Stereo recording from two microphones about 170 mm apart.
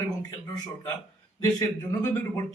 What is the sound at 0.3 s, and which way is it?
Speech, 20° left (ahead or behind).